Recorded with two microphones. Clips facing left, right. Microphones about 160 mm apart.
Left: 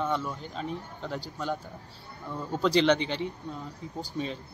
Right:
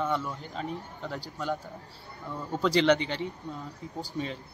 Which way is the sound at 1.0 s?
20° left (ahead or behind).